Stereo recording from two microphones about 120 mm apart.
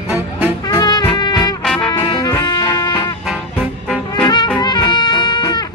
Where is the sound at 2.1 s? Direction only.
40° left (ahead or behind).